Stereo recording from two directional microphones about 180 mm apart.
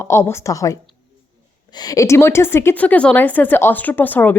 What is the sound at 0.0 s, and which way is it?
A woman's voice, 15° left (ahead or behind).